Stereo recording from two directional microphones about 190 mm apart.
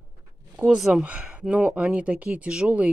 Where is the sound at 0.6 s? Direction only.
5° right (ahead or behind).